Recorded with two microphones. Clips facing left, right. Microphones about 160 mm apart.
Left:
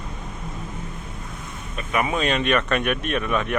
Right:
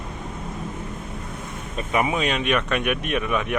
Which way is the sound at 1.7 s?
20° right (ahead or behind).